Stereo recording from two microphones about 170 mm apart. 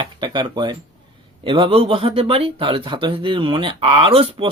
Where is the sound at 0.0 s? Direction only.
25° right (ahead or behind).